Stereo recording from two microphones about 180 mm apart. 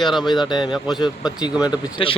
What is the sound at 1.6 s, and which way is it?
Speech, 30° left (ahead or behind).